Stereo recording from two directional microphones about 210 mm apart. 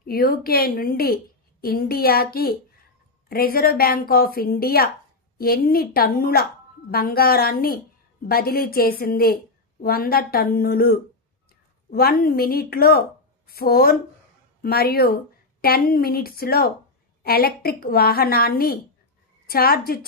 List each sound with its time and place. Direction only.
0.0 s a woman's voice: 45° left (ahead or behind)